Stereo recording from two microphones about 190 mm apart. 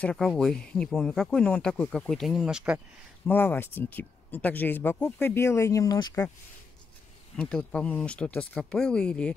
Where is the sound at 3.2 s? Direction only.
10° left (ahead or behind).